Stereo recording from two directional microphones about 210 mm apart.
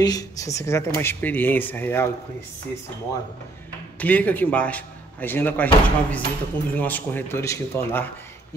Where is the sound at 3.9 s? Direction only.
5° left (ahead or behind).